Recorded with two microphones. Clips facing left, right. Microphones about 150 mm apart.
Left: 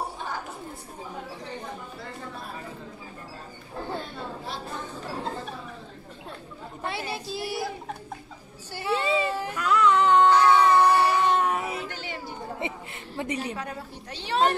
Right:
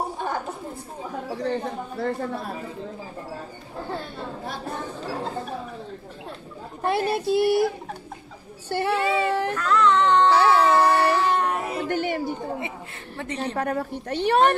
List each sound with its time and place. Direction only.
0.2 s a sound: 55° right (ahead or behind)
1.4 s speech: 65° right (ahead or behind)
6.8 s speech: 55° right (ahead or behind)
8.6 s speech: 60° right (ahead or behind)
9.6 s music: 10° left (ahead or behind)
10.3 s music: 5° right (ahead or behind)
11.8 s a sound: 55° right (ahead or behind)
12.6 s chuckle: 20° left (ahead or behind)
13.6 s speech: 55° right (ahead or behind)